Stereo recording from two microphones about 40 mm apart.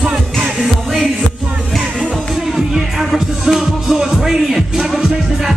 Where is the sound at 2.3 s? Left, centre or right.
Centre.